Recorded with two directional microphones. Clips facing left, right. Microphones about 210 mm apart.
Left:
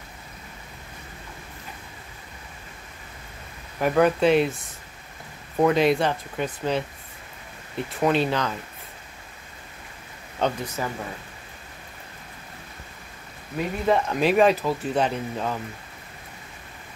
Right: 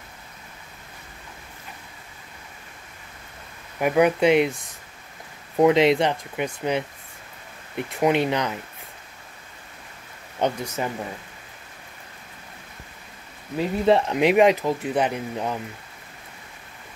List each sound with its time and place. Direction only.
3.8 s speech: 15° right (ahead or behind)
5.6 s speech: 20° right (ahead or behind)
10.4 s speech: 15° right (ahead or behind)
13.8 s speech: 25° right (ahead or behind)